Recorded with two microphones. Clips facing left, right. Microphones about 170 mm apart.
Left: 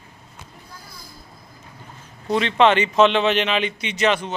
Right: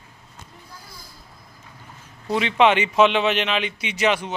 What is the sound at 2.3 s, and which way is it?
A man's voice, 10° right (ahead or behind).